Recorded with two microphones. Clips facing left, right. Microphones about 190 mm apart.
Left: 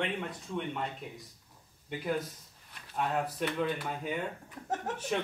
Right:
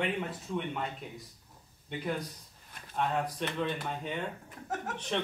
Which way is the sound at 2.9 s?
5° left (ahead or behind).